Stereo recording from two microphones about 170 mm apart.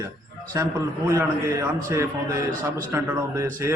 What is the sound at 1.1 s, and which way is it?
A man's voice, 20° right (ahead or behind).